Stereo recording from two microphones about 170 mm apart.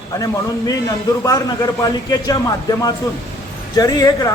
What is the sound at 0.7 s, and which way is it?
A man's voice, 20° left (ahead or behind).